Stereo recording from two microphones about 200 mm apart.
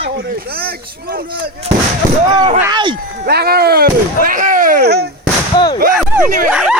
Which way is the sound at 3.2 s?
50° right (ahead or behind).